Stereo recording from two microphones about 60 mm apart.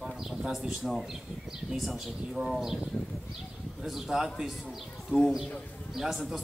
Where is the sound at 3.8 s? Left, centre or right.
Centre.